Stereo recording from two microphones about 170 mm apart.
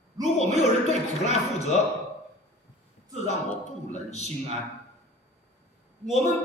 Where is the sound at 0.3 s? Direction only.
40° left (ahead or behind).